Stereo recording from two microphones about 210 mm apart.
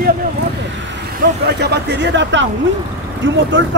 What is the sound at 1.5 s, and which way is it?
Speech, 50° right (ahead or behind).